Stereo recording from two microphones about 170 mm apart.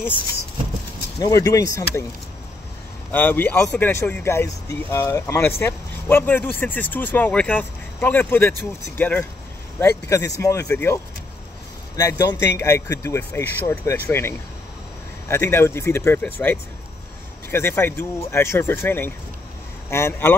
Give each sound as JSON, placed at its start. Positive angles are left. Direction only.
{"t": 1.2, "sound": "speech", "side_deg": 20}
{"t": 3.1, "sound": "speech", "side_deg": 10}
{"t": 12.0, "sound": "speech", "side_deg": 20}